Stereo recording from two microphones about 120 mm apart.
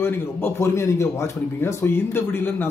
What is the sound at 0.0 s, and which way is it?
A man's voice, 20° left (ahead or behind).